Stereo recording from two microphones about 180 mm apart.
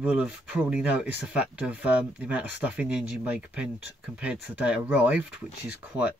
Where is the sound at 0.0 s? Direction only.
5° right (ahead or behind).